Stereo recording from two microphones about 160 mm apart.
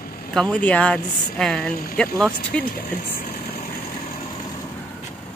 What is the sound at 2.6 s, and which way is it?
Speech, 65° left (ahead or behind).